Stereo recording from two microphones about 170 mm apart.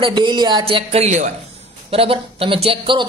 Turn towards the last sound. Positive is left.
turn(degrees=-30)  # may be behind; listen again after turning